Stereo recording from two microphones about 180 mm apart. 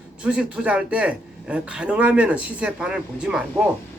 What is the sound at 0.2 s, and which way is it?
A man's voice, 5° right (ahead or behind).